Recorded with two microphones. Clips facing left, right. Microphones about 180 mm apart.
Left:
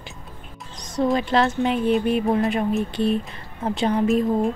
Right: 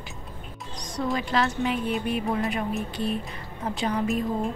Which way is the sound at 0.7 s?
25° left (ahead or behind).